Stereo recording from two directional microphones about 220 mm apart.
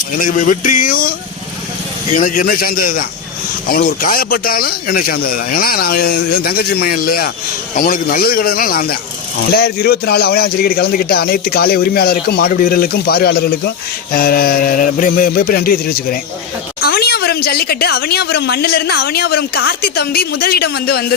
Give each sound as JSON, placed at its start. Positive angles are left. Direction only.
{"t": 0.2, "sound": "speech", "side_deg": 40}
{"t": 2.1, "sound": "a man's voice", "side_deg": 35}